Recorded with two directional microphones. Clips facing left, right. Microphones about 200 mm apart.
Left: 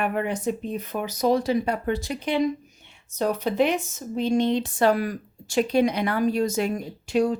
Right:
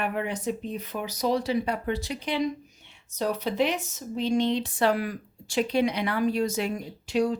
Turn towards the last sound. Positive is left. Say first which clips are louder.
# left 3 dB
turn(degrees=50)  # may be behind; listen again after turning